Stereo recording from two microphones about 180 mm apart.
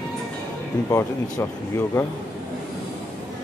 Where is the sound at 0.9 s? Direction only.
15° left (ahead or behind).